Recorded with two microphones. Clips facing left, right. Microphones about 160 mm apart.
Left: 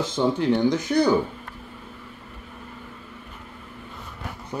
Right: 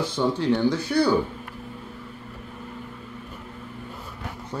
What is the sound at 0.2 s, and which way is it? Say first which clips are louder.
Speech: left 1 dB; 15° left (ahead or behind).